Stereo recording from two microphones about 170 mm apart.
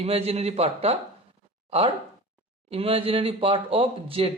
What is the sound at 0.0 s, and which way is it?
Speech, 35° right (ahead or behind).